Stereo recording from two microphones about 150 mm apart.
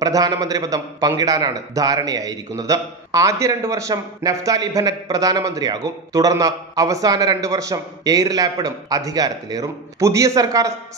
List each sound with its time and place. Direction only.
0.0 s a man's voice: 25° right (ahead or behind)